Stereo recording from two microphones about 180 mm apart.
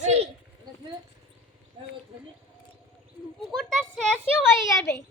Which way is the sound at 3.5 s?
Centre (ahead or behind).